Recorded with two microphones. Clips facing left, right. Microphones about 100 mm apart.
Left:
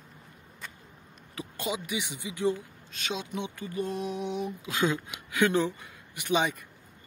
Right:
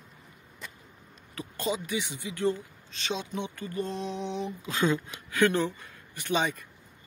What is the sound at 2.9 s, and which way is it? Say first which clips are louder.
Speech: right 1 dB; 5° left (ahead or behind).